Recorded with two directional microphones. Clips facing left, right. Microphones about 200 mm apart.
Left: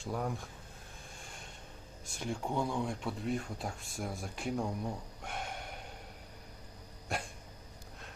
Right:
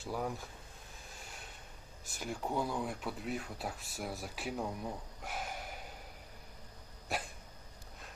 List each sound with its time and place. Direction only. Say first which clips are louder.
0.0 s speech: left 1 dB; centre (ahead or behind)
1.2 s a sound: even; 5° right (ahead or behind)
2.1 s speech: left 1 dB; 5° right (ahead or behind)
7.1 s dog: left 1 dB; centre (ahead or behind)